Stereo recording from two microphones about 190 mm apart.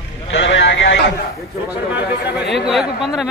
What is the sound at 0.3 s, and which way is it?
Sheep, 70° left (ahead or behind).